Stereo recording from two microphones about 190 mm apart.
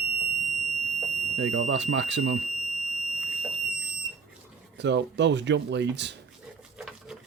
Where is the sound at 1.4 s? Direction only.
75° right (ahead or behind).